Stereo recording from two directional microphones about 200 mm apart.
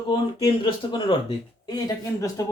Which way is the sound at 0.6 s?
25° left (ahead or behind).